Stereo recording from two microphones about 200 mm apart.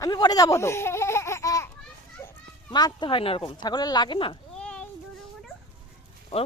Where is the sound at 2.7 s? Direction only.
20° left (ahead or behind).